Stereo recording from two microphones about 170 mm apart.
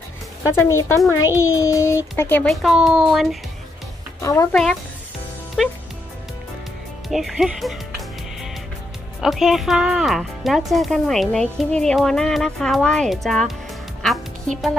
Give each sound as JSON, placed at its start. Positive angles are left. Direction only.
{"t": 0.6, "sound": "a child's voice", "side_deg": 15}
{"t": 2.5, "sound": "speech", "side_deg": 0}
{"t": 4.2, "sound": "a child's voice", "side_deg": 20}
{"t": 5.6, "sound": "speech", "side_deg": 0}
{"t": 7.1, "sound": "speech", "side_deg": 0}
{"t": 9.2, "sound": "speech", "side_deg": 0}